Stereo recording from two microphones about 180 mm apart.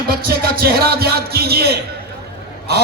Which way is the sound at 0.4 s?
60° right (ahead or behind).